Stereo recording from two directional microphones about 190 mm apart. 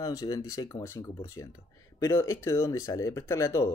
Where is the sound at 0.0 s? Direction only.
20° left (ahead or behind).